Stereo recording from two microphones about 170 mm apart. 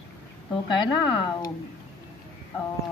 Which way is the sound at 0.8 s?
25° left (ahead or behind).